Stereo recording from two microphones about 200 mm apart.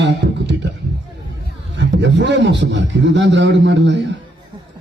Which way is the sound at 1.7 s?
65° right (ahead or behind).